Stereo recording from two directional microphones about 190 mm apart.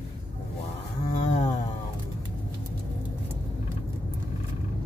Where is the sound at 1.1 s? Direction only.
40° left (ahead or behind).